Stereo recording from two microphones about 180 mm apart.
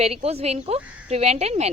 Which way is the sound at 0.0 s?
35° right (ahead or behind).